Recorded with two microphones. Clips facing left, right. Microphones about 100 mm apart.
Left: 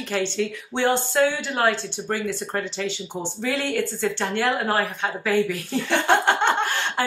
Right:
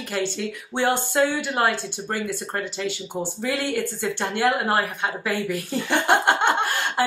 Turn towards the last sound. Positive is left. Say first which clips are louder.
# right 1 dB
turn(degrees=-10)  # may be behind; listen again after turning